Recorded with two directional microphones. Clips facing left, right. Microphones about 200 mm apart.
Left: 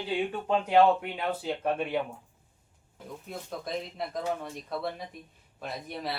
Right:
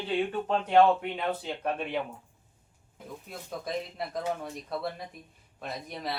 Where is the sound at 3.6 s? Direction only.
Centre (ahead or behind).